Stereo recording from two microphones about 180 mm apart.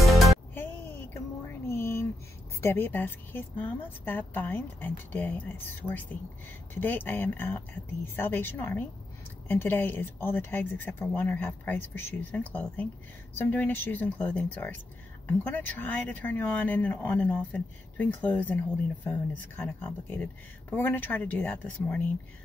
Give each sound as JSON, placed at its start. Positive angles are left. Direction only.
{"t": 0.0, "sound": "music", "side_deg": 0}
{"t": 1.1, "sound": "a sound", "side_deg": 15}
{"t": 2.6, "sound": "speech", "side_deg": 10}
{"t": 20.7, "sound": "speech", "side_deg": 10}